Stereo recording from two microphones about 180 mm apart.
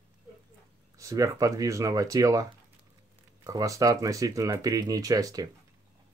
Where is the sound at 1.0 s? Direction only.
20° right (ahead or behind).